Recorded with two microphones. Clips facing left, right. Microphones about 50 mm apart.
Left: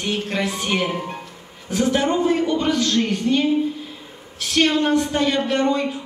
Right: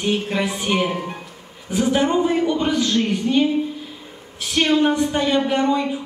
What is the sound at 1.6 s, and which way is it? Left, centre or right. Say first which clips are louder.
A woman's voice: right 1 dB; centre.